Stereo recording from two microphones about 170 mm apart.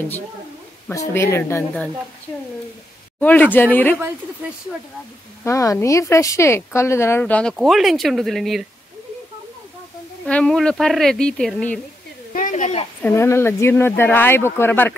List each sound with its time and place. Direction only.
0.8 s speech: 15° left (ahead or behind)
3.2 s speech: 10° left (ahead or behind)
5.4 s speech: 20° left (ahead or behind); by 8.6 s centre (ahead or behind)
10.2 s speech: 5° left (ahead or behind)
12.3 s speech: 50° left (ahead or behind)
13.0 s speech: 15° left (ahead or behind)